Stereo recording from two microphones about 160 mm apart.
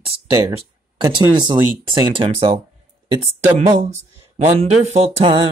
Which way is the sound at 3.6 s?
45° right (ahead or behind).